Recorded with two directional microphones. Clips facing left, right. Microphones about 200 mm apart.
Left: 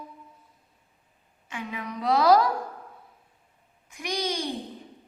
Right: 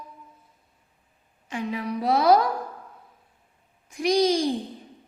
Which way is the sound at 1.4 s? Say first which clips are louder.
Right 6 dB; 35° right (ahead or behind).